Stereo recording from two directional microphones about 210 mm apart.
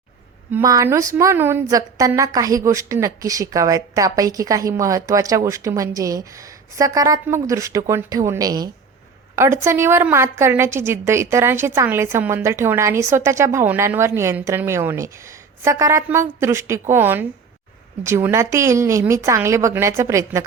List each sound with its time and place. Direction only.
0.5 s a woman's voice: 15° right (ahead or behind)